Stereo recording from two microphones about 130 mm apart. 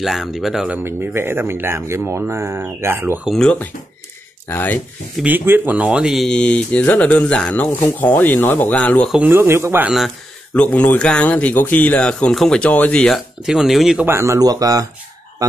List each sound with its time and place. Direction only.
0.0 s speech: centre (ahead or behind)
0.8 s speech: 20° right (ahead or behind)
3.3 s speech: 5° left (ahead or behind)
5.1 s speech: 10° right (ahead or behind); by 9.1 s 10° left (ahead or behind)
9.2 s speech: 20° right (ahead or behind)
9.8 s speech: centre (ahead or behind)
14.0 s speech: 20° right (ahead or behind)